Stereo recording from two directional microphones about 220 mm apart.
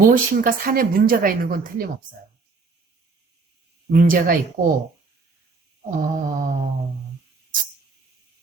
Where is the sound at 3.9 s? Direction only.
40° right (ahead or behind).